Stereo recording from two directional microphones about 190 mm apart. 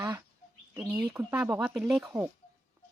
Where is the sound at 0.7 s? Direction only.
5° right (ahead or behind).